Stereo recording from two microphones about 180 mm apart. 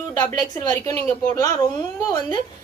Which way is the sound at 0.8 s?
15° left (ahead or behind).